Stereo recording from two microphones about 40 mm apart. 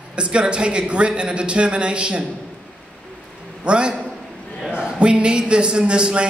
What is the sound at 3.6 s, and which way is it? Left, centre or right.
Speech, right.